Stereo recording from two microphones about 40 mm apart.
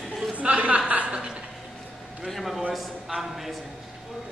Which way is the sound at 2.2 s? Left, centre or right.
Centre.